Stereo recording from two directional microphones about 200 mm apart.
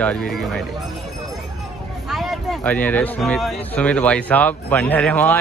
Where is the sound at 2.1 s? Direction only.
Centre (ahead or behind).